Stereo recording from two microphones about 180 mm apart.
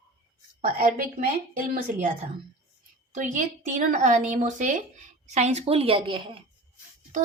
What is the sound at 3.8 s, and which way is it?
A woman's voice, 40° right (ahead or behind).